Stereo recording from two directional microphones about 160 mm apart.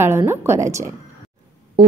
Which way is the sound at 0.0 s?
15° right (ahead or behind).